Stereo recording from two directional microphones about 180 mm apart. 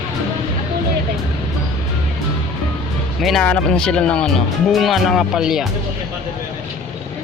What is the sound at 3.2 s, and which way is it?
Speech, 5° left (ahead or behind).